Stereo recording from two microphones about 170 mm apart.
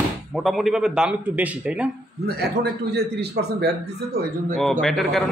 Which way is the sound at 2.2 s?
75° right (ahead or behind).